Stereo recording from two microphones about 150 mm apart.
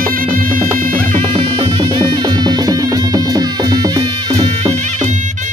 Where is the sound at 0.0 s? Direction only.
70° right (ahead or behind).